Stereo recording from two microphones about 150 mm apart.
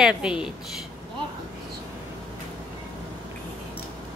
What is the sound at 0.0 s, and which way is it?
Speech, 5° right (ahead or behind).